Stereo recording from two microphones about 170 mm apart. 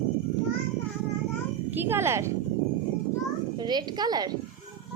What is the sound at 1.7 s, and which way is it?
Speech, 10° right (ahead or behind).